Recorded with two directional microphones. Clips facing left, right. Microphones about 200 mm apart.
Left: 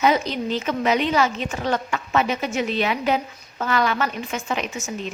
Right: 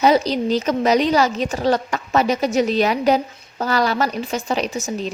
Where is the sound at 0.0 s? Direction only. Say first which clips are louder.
Right 4 dB; 35° right (ahead or behind).